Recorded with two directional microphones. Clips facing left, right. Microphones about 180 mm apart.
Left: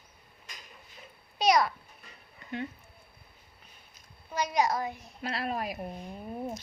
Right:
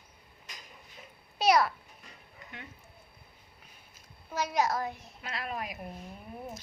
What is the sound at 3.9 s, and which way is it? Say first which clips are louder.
A child's voice: left 1 dB; 5° right (ahead or behind).